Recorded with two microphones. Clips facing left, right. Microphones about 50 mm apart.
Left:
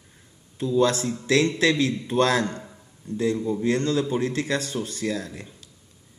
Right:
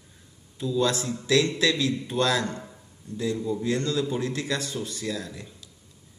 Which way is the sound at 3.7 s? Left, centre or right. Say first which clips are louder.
Left 4 dB; left.